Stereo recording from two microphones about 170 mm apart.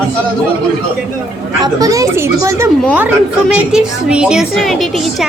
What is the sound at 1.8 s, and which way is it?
A woman's voice, 20° right (ahead or behind).